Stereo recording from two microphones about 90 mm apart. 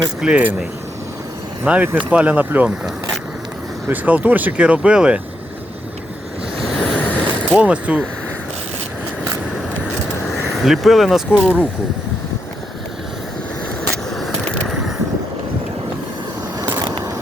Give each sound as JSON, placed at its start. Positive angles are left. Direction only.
{"t": 0.2, "sound": "speech", "side_deg": -15}
{"t": 3.8, "sound": "speech", "side_deg": -20}
{"t": 6.6, "sound": "waves", "side_deg": 0}
{"t": 6.8, "sound": "vehicle", "side_deg": 20}
{"t": 7.6, "sound": "speech", "side_deg": -15}
{"t": 10.6, "sound": "speech", "side_deg": 0}
{"t": 14.2, "sound": "a sound", "side_deg": 0}